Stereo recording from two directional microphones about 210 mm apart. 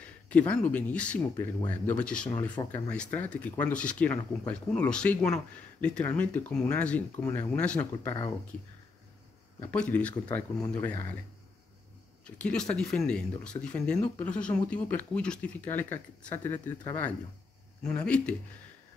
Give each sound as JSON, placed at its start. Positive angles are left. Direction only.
{"t": 0.0, "sound": "speech", "side_deg": 5}
{"t": 9.7, "sound": "speech", "side_deg": 5}
{"t": 10.2, "sound": "speech", "side_deg": 15}
{"t": 12.3, "sound": "speech", "side_deg": 5}